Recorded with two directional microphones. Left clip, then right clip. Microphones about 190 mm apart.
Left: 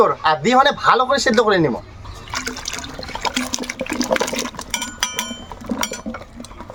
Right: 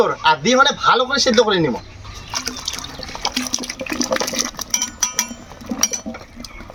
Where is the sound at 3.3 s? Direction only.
25° left (ahead or behind).